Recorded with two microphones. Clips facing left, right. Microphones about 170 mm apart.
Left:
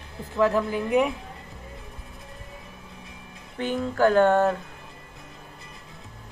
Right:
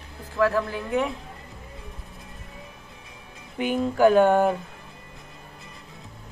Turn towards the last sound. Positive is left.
turn(degrees=-10)  # may be behind; listen again after turning